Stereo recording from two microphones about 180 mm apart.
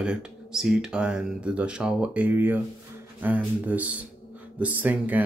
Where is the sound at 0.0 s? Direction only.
5° right (ahead or behind).